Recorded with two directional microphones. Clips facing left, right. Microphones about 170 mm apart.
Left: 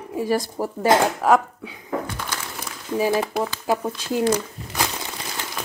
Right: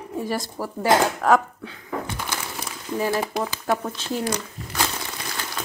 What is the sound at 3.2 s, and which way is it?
Speech, 5° left (ahead or behind).